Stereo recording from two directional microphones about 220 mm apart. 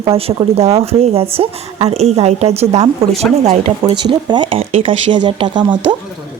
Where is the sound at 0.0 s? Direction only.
25° right (ahead or behind).